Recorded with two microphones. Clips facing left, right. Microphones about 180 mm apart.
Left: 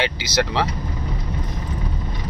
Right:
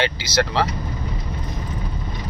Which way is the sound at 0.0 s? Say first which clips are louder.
Right 1 dB; 15° left (ahead or behind).